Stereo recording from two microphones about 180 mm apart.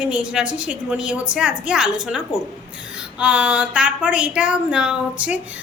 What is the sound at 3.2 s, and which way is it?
A woman's voice, 5° right (ahead or behind).